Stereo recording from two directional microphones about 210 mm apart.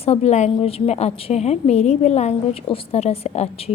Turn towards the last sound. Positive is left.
turn(degrees=30)  # may be behind; listen again after turning